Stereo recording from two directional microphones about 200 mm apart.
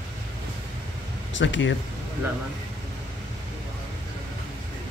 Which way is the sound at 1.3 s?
65° left (ahead or behind).